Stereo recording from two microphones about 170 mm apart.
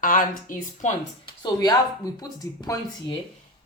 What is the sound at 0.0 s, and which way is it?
Speech, 55° left (ahead or behind).